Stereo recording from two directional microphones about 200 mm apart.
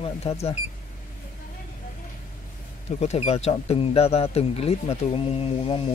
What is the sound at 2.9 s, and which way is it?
Speech, 35° left (ahead or behind).